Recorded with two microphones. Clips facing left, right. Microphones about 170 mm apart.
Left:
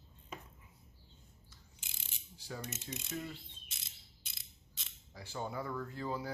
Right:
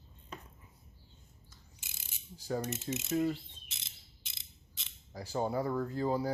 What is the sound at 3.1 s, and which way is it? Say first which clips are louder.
Speech: right 12 dB; 40° right (ahead or behind).